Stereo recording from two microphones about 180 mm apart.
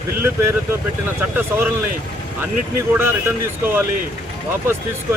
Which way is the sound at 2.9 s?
10° right (ahead or behind).